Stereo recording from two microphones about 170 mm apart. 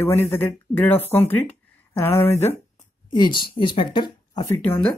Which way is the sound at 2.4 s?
15° left (ahead or behind).